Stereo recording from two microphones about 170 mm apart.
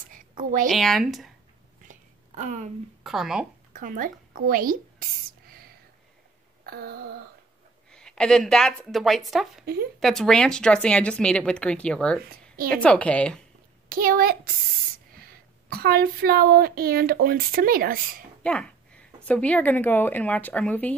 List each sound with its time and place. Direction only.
0.4 s a woman's voice: 50° right (ahead or behind)
0.7 s speech: centre (ahead or behind)
1.9 s a sound: 45° right (ahead or behind)
3.0 s speech: centre (ahead or behind)
3.7 s a woman's voice: 50° right (ahead or behind)
6.6 s a sound: 70° right (ahead or behind)
7.9 s speech: 5° left (ahead or behind)
13.8 s a woman's voice: 60° right (ahead or behind)
18.4 s a sound: 5° left (ahead or behind)
19.2 s speech: 10° left (ahead or behind)